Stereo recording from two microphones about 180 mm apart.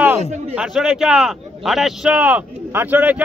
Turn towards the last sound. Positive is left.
turn(degrees=-10)  # may be behind; listen again after turning